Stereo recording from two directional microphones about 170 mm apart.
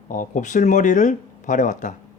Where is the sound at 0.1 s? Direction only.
50° left (ahead or behind).